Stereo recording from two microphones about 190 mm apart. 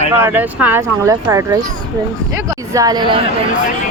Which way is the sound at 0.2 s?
10° right (ahead or behind).